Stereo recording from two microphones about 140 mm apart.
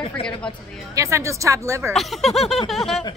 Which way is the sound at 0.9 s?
20° right (ahead or behind).